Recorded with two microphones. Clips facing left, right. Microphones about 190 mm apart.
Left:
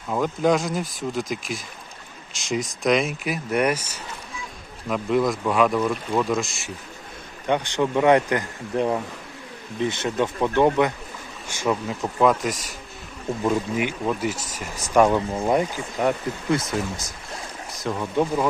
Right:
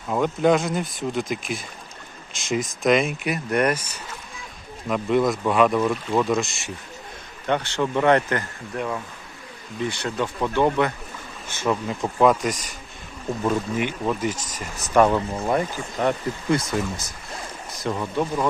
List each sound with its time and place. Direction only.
0.1 s speech: centre (ahead or behind)
4.9 s speech: centre (ahead or behind)
7.4 s speech: 15° left (ahead or behind)
8.7 s speech: 30° left (ahead or behind); by 11.7 s 15° left (ahead or behind)
11.7 s speech: centre (ahead or behind)
16.0 s speech: centre (ahead or behind)